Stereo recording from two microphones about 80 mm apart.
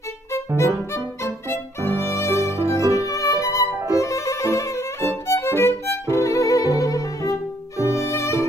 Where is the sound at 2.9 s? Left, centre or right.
Left.